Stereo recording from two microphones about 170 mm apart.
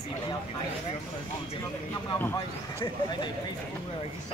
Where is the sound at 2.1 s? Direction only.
15° left (ahead or behind).